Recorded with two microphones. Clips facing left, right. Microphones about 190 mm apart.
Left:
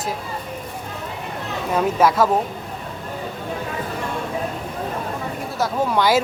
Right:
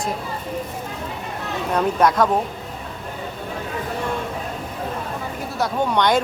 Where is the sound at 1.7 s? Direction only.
5° left (ahead or behind).